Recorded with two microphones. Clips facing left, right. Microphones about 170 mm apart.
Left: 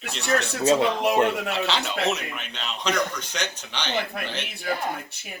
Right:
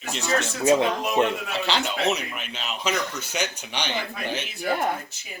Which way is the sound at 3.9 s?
55° left (ahead or behind).